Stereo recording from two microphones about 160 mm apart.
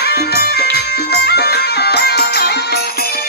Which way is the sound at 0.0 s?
90° left.